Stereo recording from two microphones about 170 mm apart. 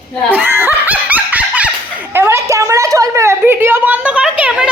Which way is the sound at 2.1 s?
15° right (ahead or behind).